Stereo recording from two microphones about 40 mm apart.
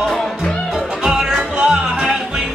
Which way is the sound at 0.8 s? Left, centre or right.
Centre.